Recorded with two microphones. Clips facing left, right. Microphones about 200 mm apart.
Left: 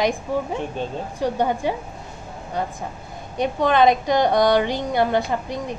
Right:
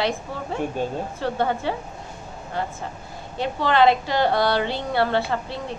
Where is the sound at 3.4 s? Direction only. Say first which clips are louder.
Left 2 dB; 20° left (ahead or behind).